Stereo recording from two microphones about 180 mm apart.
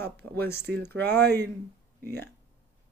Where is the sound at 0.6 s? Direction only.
65° right (ahead or behind).